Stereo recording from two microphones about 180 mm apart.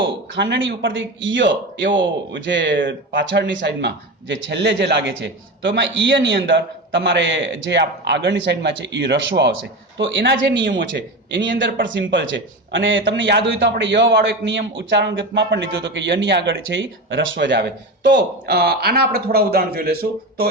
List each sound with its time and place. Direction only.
0.3 s speech: 80° right
10.0 s speech: 90° right; by 20.5 s 60° right (ahead or behind)